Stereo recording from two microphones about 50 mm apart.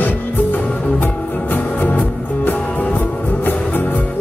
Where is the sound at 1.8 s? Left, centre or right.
Left.